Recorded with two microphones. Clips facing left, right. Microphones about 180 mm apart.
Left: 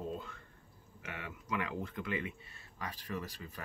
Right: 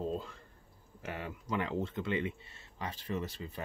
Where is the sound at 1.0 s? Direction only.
35° right (ahead or behind).